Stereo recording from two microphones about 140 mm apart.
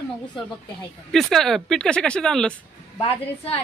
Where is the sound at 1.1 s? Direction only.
Centre (ahead or behind).